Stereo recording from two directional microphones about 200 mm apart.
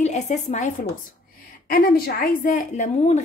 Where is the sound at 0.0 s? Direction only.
35° left (ahead or behind).